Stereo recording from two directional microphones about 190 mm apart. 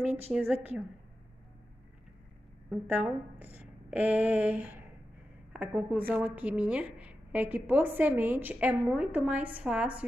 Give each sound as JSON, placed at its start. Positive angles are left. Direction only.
{"t": 0.0, "sound": "a woman's voice", "side_deg": -5}
{"t": 2.7, "sound": "a woman's voice", "side_deg": -10}